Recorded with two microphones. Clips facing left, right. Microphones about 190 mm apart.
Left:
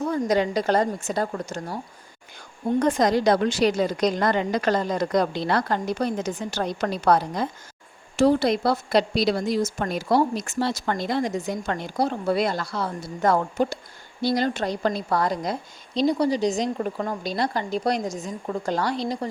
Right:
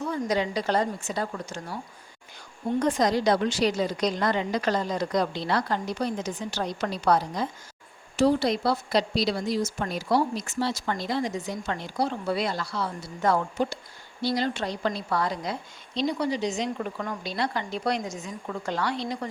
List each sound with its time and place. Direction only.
0.0 s a woman's voice: 45° left (ahead or behind)
2.7 s a woman's voice: 55° left (ahead or behind); by 19.3 s 35° left (ahead or behind)